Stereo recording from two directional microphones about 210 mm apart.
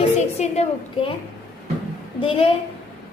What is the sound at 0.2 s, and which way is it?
Speech, 30° left (ahead or behind).